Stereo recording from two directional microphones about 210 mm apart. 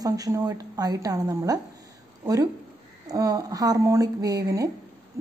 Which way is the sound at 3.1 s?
15° right (ahead or behind).